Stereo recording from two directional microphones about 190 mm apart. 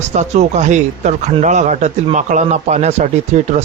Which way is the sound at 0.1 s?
40° right (ahead or behind).